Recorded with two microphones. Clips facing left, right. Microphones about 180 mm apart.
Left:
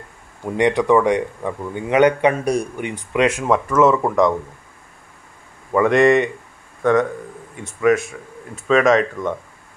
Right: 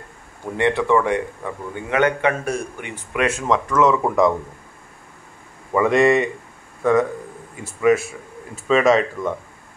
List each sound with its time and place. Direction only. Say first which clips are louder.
0.6 s a man's voice: left 3 dB; 15° left (ahead or behind)
3.3 s speech: left 2 dB; 5° left (ahead or behind)
5.7 s speech: left 2 dB; centre (ahead or behind)